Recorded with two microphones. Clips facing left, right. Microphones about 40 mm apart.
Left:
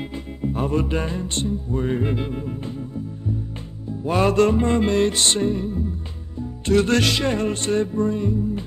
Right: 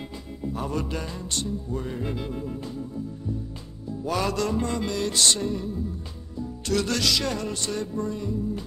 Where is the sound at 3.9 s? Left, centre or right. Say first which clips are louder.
Left 6 dB; left.